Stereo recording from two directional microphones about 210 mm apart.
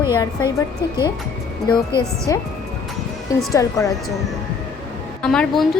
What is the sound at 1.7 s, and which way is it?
Speech, 20° left (ahead or behind).